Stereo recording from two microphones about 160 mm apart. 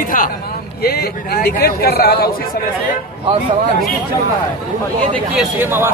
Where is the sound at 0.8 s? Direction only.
75° left (ahead or behind).